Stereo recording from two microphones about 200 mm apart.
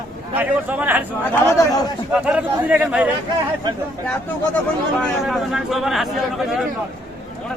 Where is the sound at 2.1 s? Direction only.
5° right (ahead or behind).